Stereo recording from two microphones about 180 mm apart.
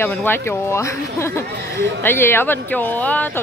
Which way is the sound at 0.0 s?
10° left (ahead or behind).